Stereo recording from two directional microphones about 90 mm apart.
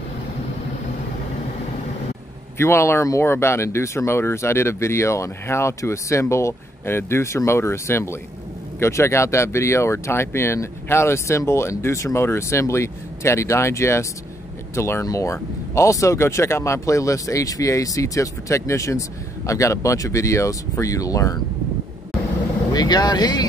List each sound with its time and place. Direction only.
2.5 s speech: 30° left (ahead or behind)
22.7 s speech: 50° left (ahead or behind)